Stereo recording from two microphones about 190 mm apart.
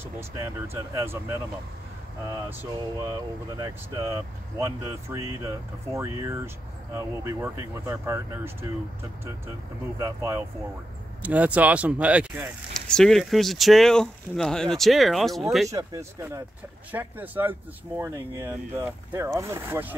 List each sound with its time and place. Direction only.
0.9 s speech: 10° right (ahead or behind)
2.2 s speech: 15° right (ahead or behind)
9.9 s speech: 15° right (ahead or behind)
12.7 s speech: 5° left (ahead or behind)
15.7 s speech: 15° right (ahead or behind)